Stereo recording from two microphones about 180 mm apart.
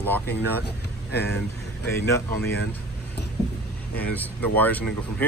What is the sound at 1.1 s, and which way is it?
Speech, 65° left (ahead or behind).